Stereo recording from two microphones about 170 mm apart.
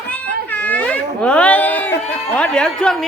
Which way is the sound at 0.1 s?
10° left (ahead or behind).